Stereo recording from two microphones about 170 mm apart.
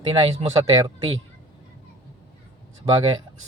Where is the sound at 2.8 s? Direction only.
30° right (ahead or behind).